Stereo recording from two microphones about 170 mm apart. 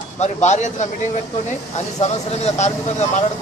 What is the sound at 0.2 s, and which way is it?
Speech, 45° left (ahead or behind).